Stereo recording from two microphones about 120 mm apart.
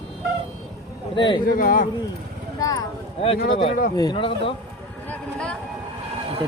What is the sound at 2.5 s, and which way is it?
Speech, 30° left (ahead or behind).